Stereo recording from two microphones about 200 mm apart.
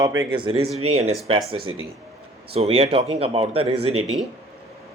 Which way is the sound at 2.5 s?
30° right (ahead or behind).